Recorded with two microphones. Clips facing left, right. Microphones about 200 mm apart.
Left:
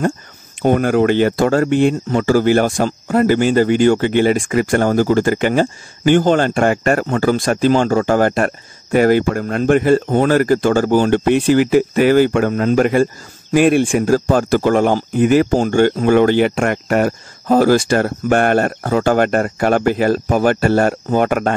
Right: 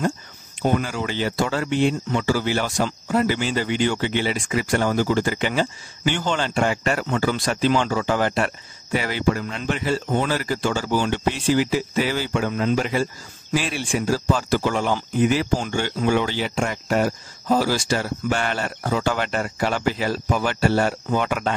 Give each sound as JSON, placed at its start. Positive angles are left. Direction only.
{"t": 0.6, "sound": "speech", "side_deg": 55}